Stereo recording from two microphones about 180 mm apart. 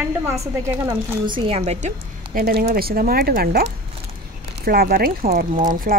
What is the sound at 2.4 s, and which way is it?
Speech, 55° right (ahead or behind).